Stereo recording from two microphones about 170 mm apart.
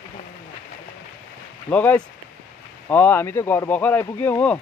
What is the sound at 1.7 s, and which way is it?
Speech, 10° left (ahead or behind).